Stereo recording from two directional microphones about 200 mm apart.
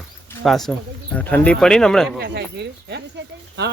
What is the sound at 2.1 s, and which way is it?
Speech, 55° right (ahead or behind).